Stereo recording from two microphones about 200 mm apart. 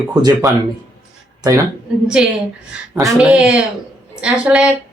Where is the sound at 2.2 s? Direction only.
5° right (ahead or behind).